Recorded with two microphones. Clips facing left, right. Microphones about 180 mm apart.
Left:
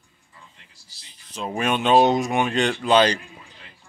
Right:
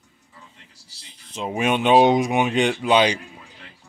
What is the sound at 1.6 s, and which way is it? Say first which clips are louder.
Speech: right 2 dB; 15° right (ahead or behind).